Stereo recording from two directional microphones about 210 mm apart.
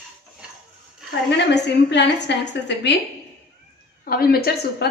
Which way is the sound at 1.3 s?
55° left (ahead or behind).